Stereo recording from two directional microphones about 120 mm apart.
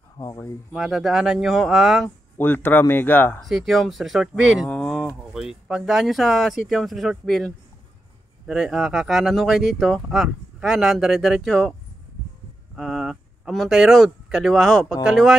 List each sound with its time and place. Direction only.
0.2 s speech: 25° left (ahead or behind)
0.7 s speech: centre (ahead or behind)
2.3 s speech: 15° left (ahead or behind)
3.4 s speech: centre (ahead or behind)
4.6 s speech: 5° left (ahead or behind)
12.7 s speech: centre (ahead or behind)